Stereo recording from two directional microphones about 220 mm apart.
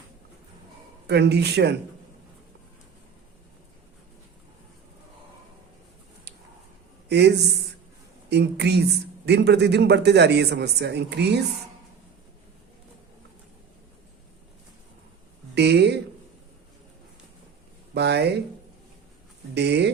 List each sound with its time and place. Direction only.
1.0 s a man's voice: 50° right (ahead or behind)
7.1 s a man's voice: 50° right (ahead or behind)
15.5 s speech: 50° right (ahead or behind)
17.9 s a man's voice: 50° right (ahead or behind)
19.5 s a man's voice: 50° right (ahead or behind)